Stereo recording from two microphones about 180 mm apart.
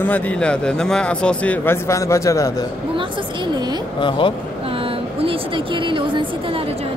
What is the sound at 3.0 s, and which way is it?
Speech, 25° right (ahead or behind).